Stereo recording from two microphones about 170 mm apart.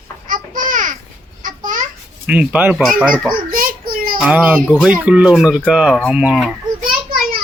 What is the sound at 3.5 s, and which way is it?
Child singing, 55° right (ahead or behind).